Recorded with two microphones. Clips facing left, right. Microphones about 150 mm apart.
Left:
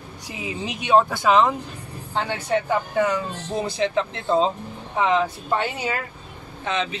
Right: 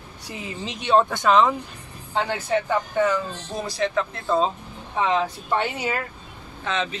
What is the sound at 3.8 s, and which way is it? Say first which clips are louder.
Speech: right 1 dB; 25° left (ahead or behind).